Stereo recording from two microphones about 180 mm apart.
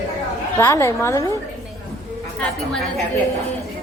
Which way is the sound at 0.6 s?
15° left (ahead or behind).